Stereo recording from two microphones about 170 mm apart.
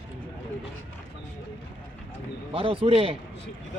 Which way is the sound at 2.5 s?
30° right (ahead or behind).